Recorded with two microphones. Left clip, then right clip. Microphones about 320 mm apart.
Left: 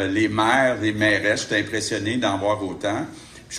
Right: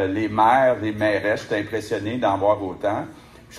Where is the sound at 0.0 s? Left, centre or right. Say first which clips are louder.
Right 2 dB; centre.